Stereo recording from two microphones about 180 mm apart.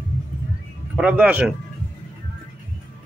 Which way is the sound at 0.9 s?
5° right (ahead or behind).